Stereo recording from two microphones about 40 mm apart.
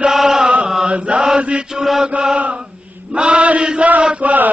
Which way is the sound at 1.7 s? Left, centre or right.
Centre.